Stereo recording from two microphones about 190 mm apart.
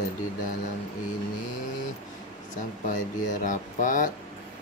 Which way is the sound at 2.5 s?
45° left (ahead or behind).